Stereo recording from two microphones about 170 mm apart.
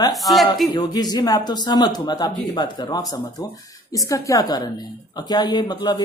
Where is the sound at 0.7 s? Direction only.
25° left (ahead or behind).